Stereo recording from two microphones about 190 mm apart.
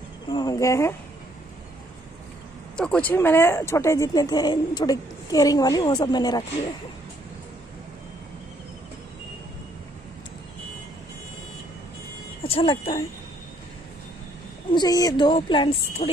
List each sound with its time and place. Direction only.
0.3 s speech: 20° left (ahead or behind)
2.8 s speech: 5° left (ahead or behind)
12.4 s speech: 30° left (ahead or behind)
14.7 s speech: 20° left (ahead or behind)